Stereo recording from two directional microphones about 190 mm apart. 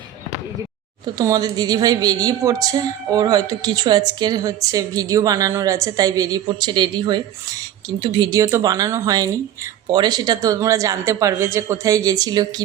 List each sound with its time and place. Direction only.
1.0 s a woman's voice: 20° right (ahead or behind)